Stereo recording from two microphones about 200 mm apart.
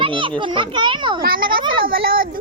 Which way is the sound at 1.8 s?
45° right (ahead or behind).